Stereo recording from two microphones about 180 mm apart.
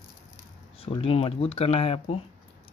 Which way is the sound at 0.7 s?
30° left (ahead or behind).